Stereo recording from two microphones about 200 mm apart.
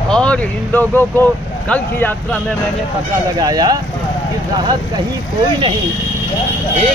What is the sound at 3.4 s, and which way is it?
Speech, 20° right (ahead or behind).